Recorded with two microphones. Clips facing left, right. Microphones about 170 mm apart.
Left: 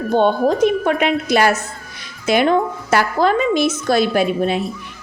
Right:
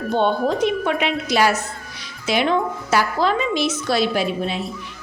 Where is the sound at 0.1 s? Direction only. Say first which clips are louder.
Left 4 dB; 45° left (ahead or behind).